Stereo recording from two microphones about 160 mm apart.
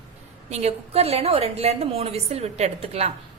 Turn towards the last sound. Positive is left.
turn(degrees=-40)  # may be behind; listen again after turning